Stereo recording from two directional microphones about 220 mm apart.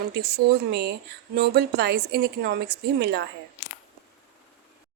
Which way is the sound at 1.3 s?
45° right (ahead or behind).